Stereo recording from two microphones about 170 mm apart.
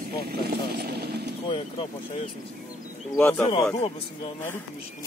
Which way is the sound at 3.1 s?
10° left (ahead or behind).